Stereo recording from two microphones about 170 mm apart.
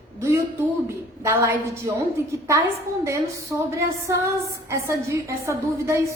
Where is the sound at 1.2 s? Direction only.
15° right (ahead or behind).